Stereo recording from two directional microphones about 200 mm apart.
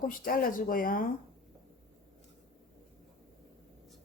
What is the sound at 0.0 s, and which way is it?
Speech, 45° left (ahead or behind).